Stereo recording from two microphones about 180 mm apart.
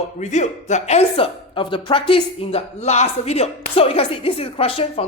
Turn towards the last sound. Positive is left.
turn(degrees=30)  # may be behind; listen again after turning